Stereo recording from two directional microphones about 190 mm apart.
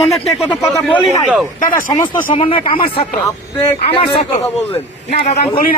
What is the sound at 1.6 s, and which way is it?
Speech, 45° left (ahead or behind).